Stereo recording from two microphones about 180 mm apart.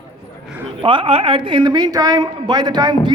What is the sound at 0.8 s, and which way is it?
A woman's voice, 25° right (ahead or behind).